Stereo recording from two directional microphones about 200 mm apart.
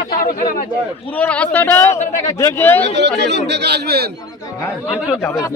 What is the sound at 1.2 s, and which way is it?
Speech, 5° left (ahead or behind).